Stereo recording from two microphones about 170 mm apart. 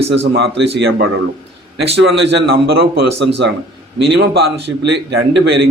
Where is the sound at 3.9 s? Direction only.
85° right.